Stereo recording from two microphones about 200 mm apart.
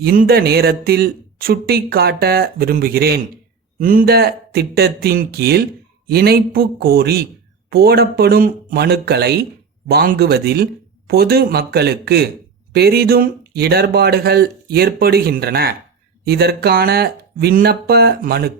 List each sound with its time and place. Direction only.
0.0 s speech: 50° right (ahead or behind)